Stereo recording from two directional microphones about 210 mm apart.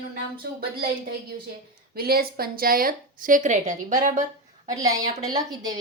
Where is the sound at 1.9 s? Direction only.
45° right (ahead or behind).